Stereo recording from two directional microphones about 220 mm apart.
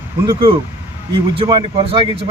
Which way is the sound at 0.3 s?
25° right (ahead or behind).